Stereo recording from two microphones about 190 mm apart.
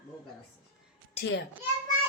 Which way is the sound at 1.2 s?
35° left (ahead or behind).